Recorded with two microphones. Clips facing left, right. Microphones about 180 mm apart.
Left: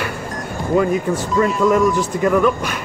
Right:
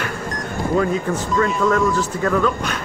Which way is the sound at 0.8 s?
10° left (ahead or behind).